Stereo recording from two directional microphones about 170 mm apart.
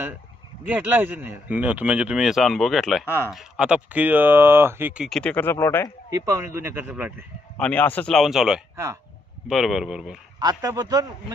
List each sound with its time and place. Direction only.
0.7 s speech: 10° right (ahead or behind)
3.1 s speech: 15° left (ahead or behind)
3.3 s speech: 5° right (ahead or behind)
5.0 s speech: 5° left (ahead or behind)
6.1 s speech: 20° right (ahead or behind)
7.6 s speech: 10° left (ahead or behind)
8.7 s speech: 15° right (ahead or behind)
9.5 s speech: centre (ahead or behind)
10.4 s a man's voice: 20° right (ahead or behind)